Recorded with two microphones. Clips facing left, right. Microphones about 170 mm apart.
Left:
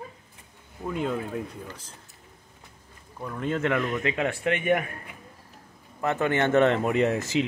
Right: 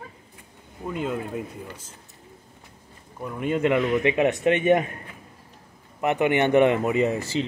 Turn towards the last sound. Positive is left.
turn(degrees=0)  # may be behind; listen again after turning